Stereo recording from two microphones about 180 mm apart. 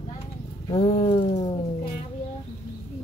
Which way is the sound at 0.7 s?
35° left (ahead or behind).